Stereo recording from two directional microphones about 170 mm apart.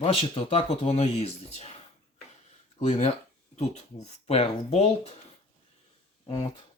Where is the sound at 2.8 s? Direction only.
45° left (ahead or behind).